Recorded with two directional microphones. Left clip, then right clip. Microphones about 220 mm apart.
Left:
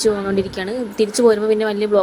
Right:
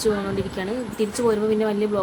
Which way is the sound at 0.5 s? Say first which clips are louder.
Left 5 dB; 20° left (ahead or behind).